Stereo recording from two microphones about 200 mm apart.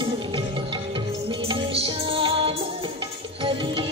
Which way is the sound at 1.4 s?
25° right (ahead or behind).